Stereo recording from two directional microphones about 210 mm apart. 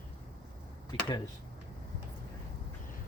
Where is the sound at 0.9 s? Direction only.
25° left (ahead or behind).